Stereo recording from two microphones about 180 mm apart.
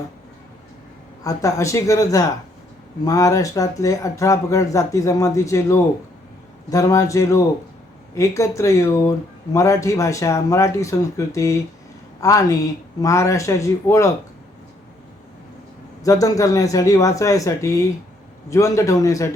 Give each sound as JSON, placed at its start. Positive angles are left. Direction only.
{"t": 1.2, "sound": "speech", "side_deg": 20}
{"t": 16.0, "sound": "speech", "side_deg": 20}